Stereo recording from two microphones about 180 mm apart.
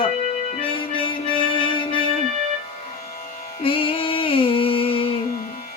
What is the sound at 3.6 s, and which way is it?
Music, 30° left (ahead or behind).